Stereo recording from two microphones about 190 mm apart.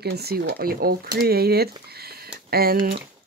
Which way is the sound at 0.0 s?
55° right (ahead or behind).